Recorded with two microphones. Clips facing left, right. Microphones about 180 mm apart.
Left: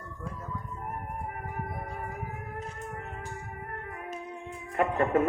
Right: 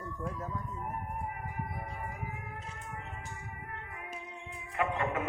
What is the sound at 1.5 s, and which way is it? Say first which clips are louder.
Music: left 3 dB; 50° left (ahead or behind).